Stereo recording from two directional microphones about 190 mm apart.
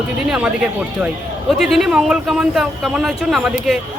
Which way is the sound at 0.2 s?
5° right (ahead or behind).